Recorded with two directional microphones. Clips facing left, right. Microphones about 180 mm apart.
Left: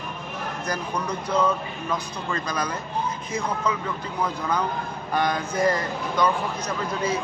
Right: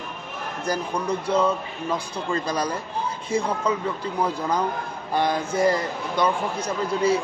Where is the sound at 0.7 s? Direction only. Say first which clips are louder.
Right 4 dB; 30° right (ahead or behind).